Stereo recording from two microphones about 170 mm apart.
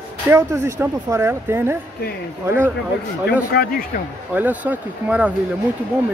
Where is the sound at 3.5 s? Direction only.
65° left (ahead or behind).